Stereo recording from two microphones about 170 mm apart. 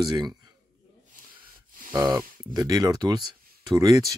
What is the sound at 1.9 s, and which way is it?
Speech, 20° right (ahead or behind).